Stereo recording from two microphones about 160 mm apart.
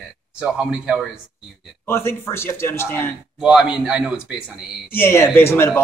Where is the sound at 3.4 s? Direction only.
5° right (ahead or behind).